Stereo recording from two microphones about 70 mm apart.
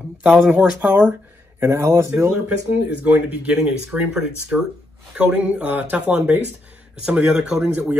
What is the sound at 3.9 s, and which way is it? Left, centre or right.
Speech, centre.